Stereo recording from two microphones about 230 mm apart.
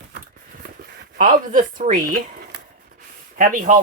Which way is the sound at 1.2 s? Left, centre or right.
Right.